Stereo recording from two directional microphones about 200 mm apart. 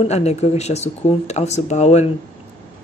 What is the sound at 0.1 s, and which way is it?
Speech, 35° left (ahead or behind).